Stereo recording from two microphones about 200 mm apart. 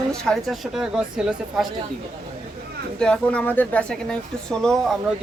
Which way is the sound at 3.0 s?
5° left (ahead or behind).